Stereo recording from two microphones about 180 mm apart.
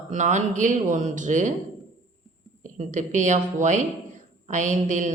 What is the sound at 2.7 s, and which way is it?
Speech, 45° right (ahead or behind).